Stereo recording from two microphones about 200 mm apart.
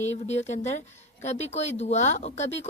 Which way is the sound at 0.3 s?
35° left (ahead or behind).